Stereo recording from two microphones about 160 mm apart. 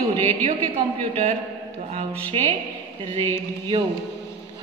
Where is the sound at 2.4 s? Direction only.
35° right (ahead or behind).